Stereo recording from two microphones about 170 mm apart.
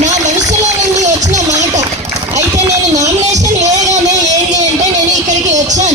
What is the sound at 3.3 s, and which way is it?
Music, 45° right (ahead or behind).